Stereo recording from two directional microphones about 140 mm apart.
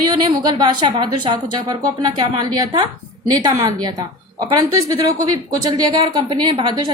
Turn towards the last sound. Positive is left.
turn(degrees=-30)  # may be behind; listen again after turning